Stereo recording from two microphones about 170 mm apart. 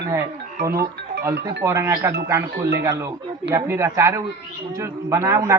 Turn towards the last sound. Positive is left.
turn(degrees=-15)  # may be behind; listen again after turning